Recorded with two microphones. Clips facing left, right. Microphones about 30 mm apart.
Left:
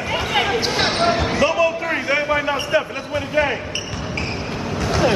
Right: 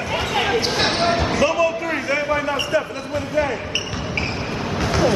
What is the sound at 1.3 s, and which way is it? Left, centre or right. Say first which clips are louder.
Basketball bounce: left 1 dB; centre.